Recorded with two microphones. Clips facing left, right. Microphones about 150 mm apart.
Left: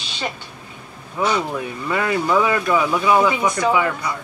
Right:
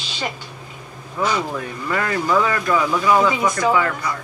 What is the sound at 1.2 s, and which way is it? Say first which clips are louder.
Speech: left 1 dB; 15° left (ahead or behind).